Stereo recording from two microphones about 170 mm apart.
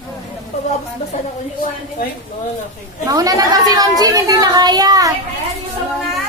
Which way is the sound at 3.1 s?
20° right (ahead or behind).